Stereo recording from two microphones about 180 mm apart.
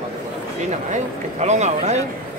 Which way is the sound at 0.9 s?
40° right (ahead or behind).